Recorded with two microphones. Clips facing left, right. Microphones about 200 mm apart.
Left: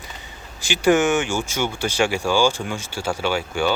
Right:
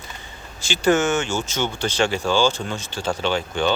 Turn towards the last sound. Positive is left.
turn(degrees=10)  # may be behind; listen again after turning